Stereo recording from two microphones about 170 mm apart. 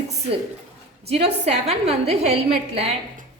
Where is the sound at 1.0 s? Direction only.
40° right (ahead or behind).